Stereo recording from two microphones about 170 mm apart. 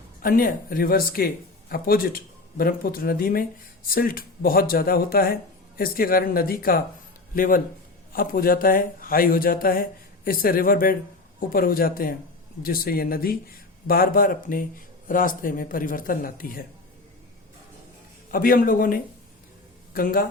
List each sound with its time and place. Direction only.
0.2 s speech: 55° left (ahead or behind)
18.3 s speech: 55° left (ahead or behind)